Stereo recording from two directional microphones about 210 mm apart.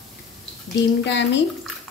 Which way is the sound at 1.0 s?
55° left (ahead or behind).